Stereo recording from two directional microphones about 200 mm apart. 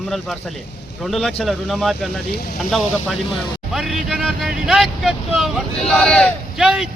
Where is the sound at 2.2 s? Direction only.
50° left (ahead or behind).